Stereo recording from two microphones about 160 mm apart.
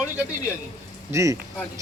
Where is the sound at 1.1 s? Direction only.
20° right (ahead or behind).